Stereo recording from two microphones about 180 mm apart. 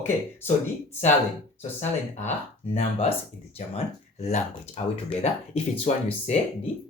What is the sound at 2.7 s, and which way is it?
Speech, 35° left (ahead or behind).